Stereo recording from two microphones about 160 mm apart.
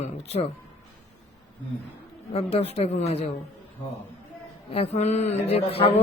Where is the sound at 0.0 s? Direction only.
40° left (ahead or behind).